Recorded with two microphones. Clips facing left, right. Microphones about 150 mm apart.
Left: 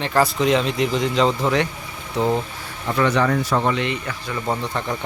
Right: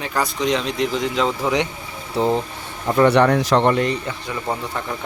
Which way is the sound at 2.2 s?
30° right (ahead or behind).